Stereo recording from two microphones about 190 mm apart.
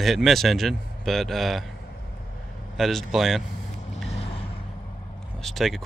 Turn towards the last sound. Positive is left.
turn(degrees=0)  # may be behind; listen again after turning